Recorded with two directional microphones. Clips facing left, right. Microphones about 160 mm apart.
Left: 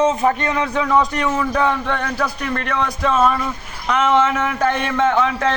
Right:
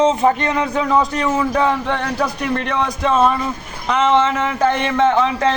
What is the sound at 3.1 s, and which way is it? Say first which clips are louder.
Speech: right 1 dB; 30° right (ahead or behind).